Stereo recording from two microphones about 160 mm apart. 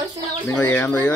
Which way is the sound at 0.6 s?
10° left (ahead or behind).